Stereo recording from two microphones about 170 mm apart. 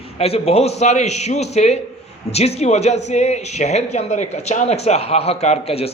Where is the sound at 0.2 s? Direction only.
35° left (ahead or behind).